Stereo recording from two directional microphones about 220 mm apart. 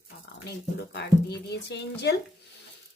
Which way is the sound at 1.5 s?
50° left (ahead or behind).